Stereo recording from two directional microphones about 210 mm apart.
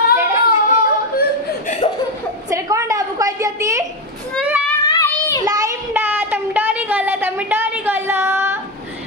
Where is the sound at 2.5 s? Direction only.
15° right (ahead or behind).